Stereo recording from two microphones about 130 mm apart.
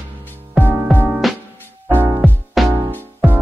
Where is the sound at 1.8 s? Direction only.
20° right (ahead or behind).